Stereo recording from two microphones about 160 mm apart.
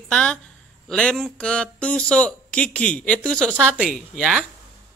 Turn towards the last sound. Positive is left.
turn(degrees=-5)  # may be behind; listen again after turning